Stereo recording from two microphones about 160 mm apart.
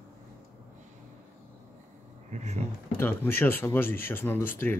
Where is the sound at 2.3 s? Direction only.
45° right (ahead or behind).